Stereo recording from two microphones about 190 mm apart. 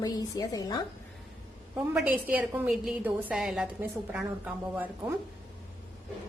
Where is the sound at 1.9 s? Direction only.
5° right (ahead or behind).